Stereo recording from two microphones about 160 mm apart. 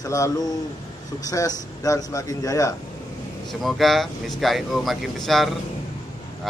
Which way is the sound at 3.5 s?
Centre (ahead or behind).